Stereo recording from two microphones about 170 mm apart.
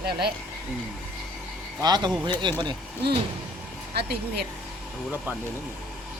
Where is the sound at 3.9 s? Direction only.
70° right (ahead or behind).